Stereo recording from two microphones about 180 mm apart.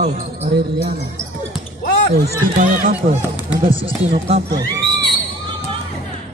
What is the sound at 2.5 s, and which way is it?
Speech, 50° right (ahead or behind).